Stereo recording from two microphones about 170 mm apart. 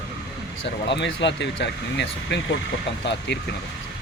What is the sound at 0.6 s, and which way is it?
Speech, 90° left.